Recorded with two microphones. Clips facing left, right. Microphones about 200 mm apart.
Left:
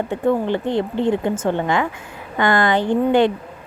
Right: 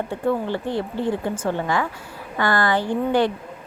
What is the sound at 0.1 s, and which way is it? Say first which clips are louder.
A woman's voice: left 5 dB; 20° left (ahead or behind).